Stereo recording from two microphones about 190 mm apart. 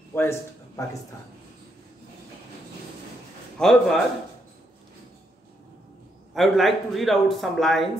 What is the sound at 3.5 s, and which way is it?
Speech, centre (ahead or behind).